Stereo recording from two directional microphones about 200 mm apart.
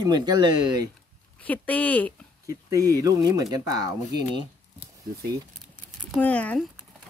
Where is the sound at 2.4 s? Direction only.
15° right (ahead or behind).